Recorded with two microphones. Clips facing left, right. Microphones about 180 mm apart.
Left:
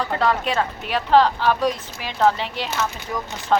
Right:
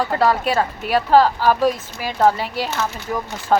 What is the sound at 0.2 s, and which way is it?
A woman's voice, 5° right (ahead or behind).